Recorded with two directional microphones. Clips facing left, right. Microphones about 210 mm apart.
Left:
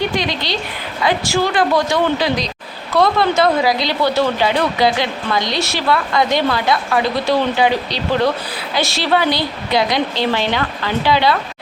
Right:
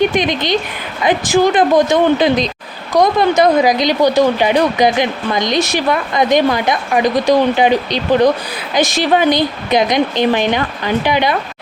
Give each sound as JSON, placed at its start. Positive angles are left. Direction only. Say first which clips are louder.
{"t": 0.0, "sound": "speech", "louder": "right 5 dB", "side_deg": -20}